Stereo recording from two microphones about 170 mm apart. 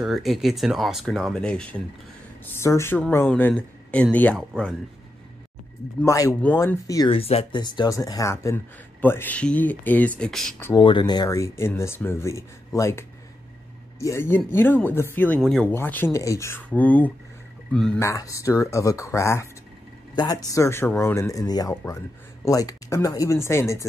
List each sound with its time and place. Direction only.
0.0 s speech: centre (ahead or behind)
6.0 s speech: 20° left (ahead or behind)
7.1 s speech: 35° left (ahead or behind); by 10.5 s 5° left (ahead or behind)
10.8 s speech: 30° left (ahead or behind)
14.0 s speech: 15° left (ahead or behind)